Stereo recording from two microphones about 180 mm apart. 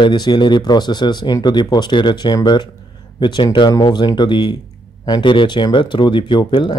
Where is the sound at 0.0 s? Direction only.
25° left (ahead or behind).